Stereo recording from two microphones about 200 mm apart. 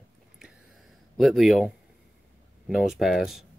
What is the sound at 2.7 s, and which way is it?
Speech, centre (ahead or behind).